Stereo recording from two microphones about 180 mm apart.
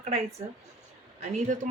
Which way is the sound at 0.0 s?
35° right (ahead or behind).